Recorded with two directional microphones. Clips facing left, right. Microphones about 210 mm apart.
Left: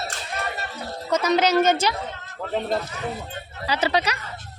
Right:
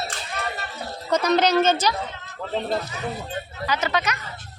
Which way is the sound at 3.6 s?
30° left (ahead or behind).